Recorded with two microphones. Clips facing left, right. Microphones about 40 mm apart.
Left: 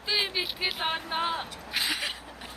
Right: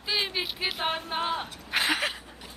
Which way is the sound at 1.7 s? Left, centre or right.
Right.